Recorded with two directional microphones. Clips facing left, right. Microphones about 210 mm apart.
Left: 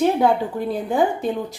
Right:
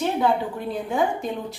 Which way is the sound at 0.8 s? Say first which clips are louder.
Left 3 dB; 35° left (ahead or behind).